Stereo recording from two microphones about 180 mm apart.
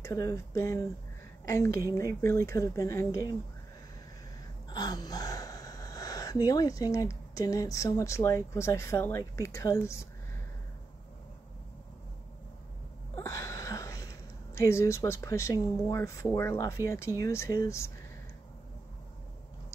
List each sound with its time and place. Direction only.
0.0 s speech: 15° left (ahead or behind)
4.6 s speech: 25° left (ahead or behind)
13.1 s speech: 15° left (ahead or behind)